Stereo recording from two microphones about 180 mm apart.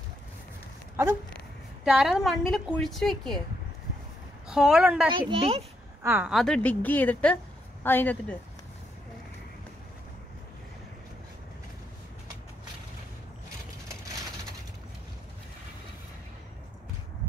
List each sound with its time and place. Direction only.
1.9 s a woman's voice: 5° right (ahead or behind)
4.5 s a woman's voice: centre (ahead or behind)
5.1 s speech: 30° right (ahead or behind)
6.0 s a woman's voice: 10° right (ahead or behind)
6.3 s a woman's voice: 5° left (ahead or behind)